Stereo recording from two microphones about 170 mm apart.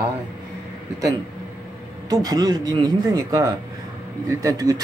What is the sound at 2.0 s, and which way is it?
Speech, 20° right (ahead or behind).